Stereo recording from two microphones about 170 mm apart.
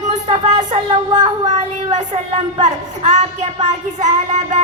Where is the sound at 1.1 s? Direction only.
25° right (ahead or behind).